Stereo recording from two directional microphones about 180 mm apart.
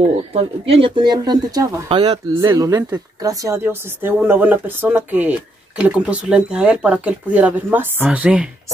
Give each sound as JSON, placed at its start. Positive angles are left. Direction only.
{"t": 0.3, "sound": "speech", "side_deg": -35}